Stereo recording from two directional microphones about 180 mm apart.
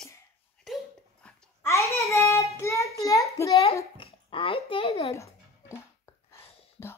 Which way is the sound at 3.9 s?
30° left (ahead or behind).